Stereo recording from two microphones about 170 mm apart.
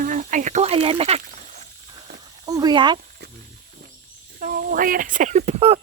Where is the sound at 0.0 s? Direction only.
50° right (ahead or behind).